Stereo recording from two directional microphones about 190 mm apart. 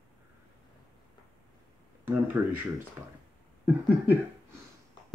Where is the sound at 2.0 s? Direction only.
10° right (ahead or behind).